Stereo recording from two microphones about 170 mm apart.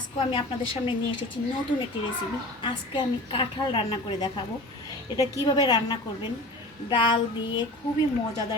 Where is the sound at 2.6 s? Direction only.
25° left (ahead or behind).